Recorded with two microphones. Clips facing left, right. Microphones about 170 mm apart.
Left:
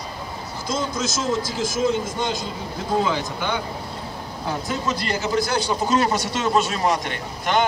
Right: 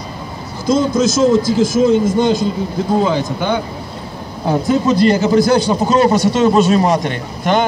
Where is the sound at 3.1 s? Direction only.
25° right (ahead or behind).